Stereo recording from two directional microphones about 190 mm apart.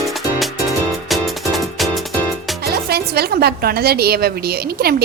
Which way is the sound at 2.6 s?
55° right (ahead or behind).